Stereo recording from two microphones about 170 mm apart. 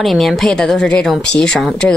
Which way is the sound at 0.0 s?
Centre (ahead or behind).